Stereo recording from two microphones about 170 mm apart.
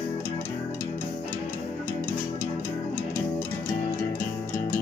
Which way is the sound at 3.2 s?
20° left (ahead or behind).